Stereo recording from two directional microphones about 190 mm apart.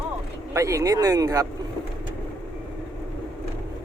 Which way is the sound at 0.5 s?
15° right (ahead or behind).